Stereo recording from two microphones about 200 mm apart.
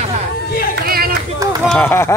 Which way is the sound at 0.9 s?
50° right (ahead or behind).